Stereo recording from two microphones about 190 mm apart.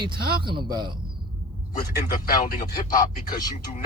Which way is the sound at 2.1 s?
20° left (ahead or behind).